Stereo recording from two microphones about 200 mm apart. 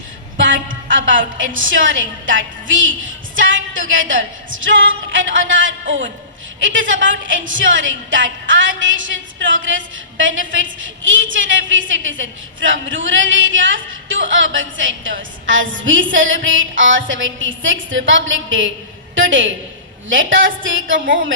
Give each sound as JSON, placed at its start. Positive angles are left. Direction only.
{"t": 0.3, "sound": "a woman's voice", "side_deg": -65}
{"t": 3.3, "sound": "music", "side_deg": -70}
{"t": 5.1, "sound": "a woman's voice", "side_deg": -70}